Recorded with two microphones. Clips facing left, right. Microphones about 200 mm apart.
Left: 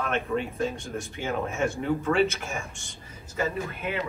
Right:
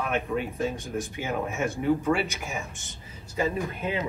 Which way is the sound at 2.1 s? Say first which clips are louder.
Left 2 dB; 15° right (ahead or behind).